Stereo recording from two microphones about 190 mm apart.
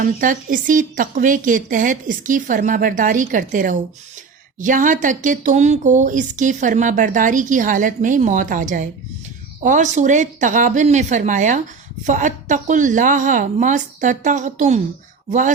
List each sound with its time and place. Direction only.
0.0 s a woman's voice: 45° right (ahead or behind)